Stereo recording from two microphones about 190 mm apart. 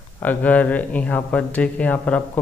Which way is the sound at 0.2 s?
10° left (ahead or behind).